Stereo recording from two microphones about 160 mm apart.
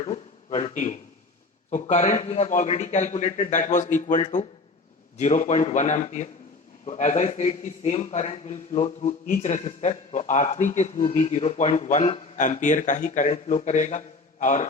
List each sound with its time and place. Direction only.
0.0 s a man's voice: 45° left (ahead or behind)